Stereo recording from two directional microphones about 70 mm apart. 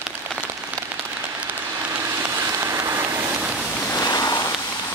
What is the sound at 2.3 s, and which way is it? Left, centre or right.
Rain on surface, right.